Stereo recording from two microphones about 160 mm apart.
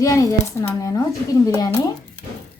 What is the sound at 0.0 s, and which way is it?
Speech, 20° left (ahead or behind).